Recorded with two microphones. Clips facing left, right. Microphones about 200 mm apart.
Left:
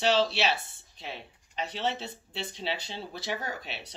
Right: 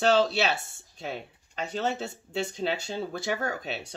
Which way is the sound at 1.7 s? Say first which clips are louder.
Right 4 dB; 45° right (ahead or behind).